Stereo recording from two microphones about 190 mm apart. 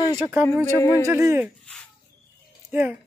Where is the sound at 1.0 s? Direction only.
15° right (ahead or behind).